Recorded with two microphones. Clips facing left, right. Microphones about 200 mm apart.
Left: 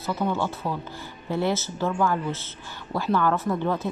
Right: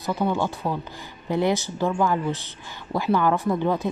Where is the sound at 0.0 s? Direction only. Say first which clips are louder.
Right 2 dB; 15° right (ahead or behind).